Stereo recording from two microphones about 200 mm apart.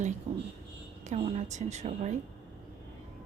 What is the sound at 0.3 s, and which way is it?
A woman's voice, 30° right (ahead or behind).